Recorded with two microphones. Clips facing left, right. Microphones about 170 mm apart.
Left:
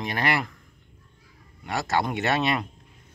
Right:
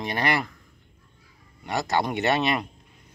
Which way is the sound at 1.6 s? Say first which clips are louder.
Right 1 dB; centre (ahead or behind).